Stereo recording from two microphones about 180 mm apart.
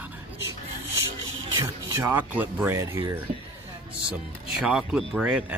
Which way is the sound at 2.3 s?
10° right (ahead or behind).